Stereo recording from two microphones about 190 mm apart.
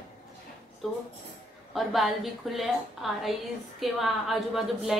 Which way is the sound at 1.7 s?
Centre (ahead or behind).